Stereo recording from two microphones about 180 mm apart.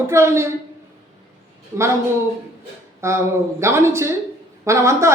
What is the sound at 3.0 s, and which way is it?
Speech, 15° right (ahead or behind).